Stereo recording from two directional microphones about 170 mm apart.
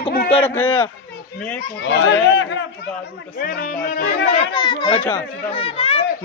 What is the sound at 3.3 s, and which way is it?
Speech, 60° left (ahead or behind).